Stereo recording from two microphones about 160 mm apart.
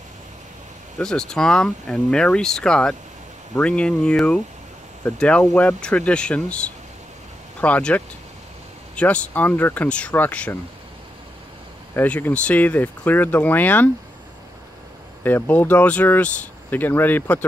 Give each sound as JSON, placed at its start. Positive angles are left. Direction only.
{"t": 0.9, "sound": "speech", "side_deg": 5}
{"t": 11.9, "sound": "speech", "side_deg": 10}
{"t": 15.2, "sound": "speech", "side_deg": 10}